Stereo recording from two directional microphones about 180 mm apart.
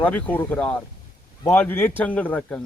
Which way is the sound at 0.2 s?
10° left (ahead or behind).